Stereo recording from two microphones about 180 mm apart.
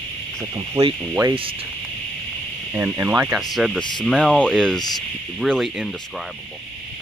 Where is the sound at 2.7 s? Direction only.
10° right (ahead or behind).